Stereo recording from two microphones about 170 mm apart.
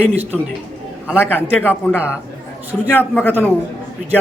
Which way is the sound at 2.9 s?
10° left (ahead or behind).